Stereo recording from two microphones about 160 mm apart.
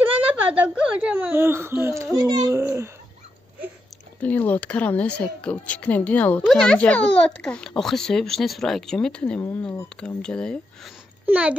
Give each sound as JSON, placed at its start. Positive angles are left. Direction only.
{"t": 0.3, "sound": "a child's voice", "side_deg": -10}
{"t": 4.2, "sound": "speech", "side_deg": 10}
{"t": 11.2, "sound": "a child's voice", "side_deg": -10}